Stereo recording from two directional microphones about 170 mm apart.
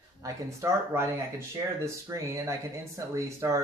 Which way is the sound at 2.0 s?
15° right (ahead or behind).